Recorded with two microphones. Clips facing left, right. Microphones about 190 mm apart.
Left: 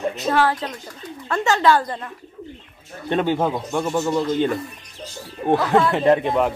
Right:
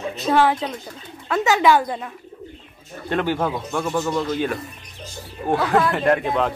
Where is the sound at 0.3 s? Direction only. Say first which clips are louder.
Right 3 dB; 15° right (ahead or behind).